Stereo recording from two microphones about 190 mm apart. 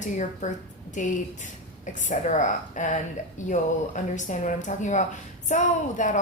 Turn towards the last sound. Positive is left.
turn(degrees=40)  # may be behind; listen again after turning